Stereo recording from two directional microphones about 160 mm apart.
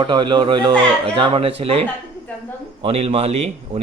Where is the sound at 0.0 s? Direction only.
30° right (ahead or behind).